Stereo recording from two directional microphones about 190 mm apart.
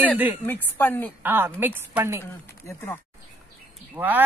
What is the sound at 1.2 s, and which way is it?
Speech, 10° right (ahead or behind).